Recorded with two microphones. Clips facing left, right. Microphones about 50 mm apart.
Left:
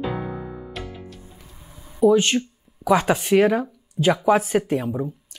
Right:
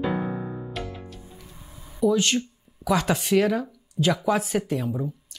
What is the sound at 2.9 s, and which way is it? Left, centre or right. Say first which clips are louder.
Speech: left 4 dB; left.